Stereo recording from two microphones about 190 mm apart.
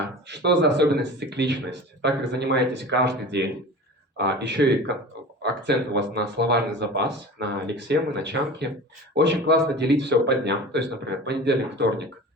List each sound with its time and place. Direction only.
0.3 s speech: 65° right (ahead or behind)